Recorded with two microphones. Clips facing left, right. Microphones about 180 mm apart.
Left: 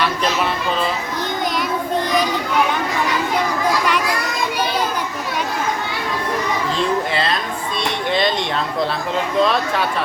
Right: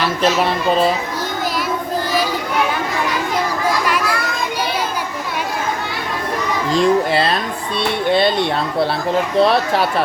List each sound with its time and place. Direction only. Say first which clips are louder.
9.4 s speech: right 3 dB; 35° right (ahead or behind)